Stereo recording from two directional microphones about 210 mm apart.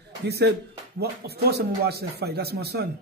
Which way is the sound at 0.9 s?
50° right (ahead or behind).